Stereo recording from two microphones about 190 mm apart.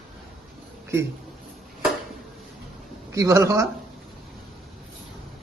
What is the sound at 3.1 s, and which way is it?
Speech, 15° right (ahead or behind).